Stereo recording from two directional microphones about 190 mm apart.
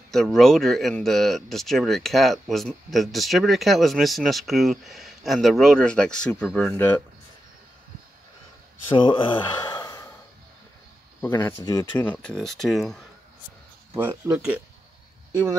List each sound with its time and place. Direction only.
0.1 s speech: centre (ahead or behind)
8.9 s speech: 25° left (ahead or behind)
11.2 s speech: 10° left (ahead or behind)
12.1 s speech: 5° left (ahead or behind)
13.9 s speech: 10° right (ahead or behind)